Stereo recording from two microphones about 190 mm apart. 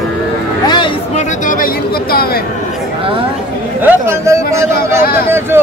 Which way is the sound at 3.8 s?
15° right (ahead or behind).